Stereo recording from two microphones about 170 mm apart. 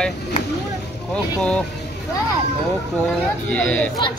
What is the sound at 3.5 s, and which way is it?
Speech, 10° left (ahead or behind).